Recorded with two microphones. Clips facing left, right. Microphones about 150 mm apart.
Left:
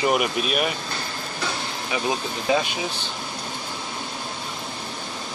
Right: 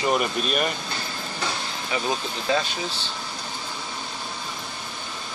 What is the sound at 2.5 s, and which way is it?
Speech, 15° left (ahead or behind).